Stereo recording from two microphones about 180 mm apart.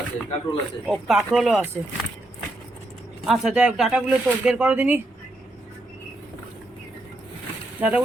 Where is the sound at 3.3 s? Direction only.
5° right (ahead or behind).